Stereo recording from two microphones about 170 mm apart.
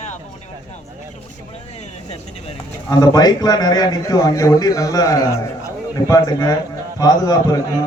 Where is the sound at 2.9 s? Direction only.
20° left (ahead or behind).